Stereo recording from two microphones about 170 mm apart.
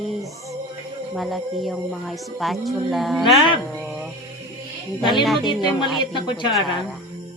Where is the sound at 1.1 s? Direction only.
Centre (ahead or behind).